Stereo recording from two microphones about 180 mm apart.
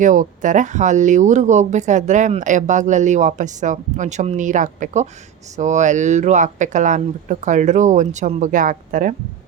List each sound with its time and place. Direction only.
0.0 s speech: 45° right (ahead or behind)